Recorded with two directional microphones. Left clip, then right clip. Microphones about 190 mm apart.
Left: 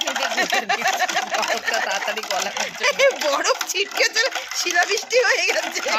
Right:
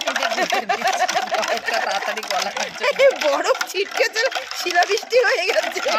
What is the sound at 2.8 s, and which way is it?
Speech, 55° right (ahead or behind).